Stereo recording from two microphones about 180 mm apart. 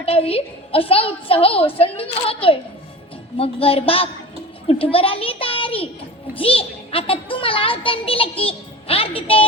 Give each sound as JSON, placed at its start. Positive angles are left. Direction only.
{"t": 0.0, "sound": "a woman's voice", "side_deg": 35}